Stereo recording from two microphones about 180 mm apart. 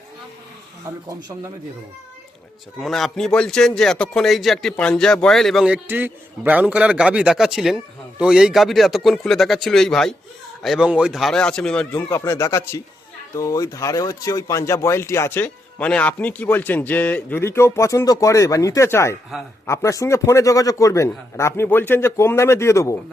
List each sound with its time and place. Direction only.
2.7 s speech: centre (ahead or behind)